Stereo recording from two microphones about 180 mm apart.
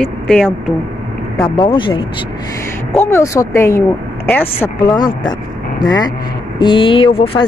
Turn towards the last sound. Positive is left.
turn(degrees=30)  # may be behind; listen again after turning